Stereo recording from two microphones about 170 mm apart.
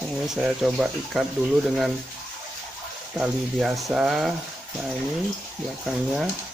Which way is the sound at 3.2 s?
Centre (ahead or behind).